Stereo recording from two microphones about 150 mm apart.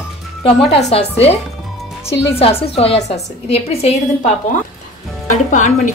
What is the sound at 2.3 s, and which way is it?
Speech, 40° left (ahead or behind).